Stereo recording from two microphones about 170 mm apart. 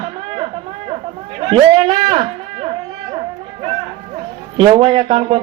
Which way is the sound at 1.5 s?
30° right (ahead or behind).